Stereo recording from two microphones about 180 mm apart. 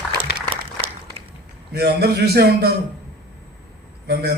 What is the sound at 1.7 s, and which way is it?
Speech, 60° right (ahead or behind).